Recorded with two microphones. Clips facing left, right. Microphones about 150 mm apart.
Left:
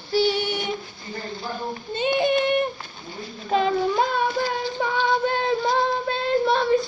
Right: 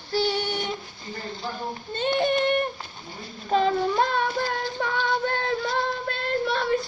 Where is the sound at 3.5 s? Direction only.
5° left (ahead or behind).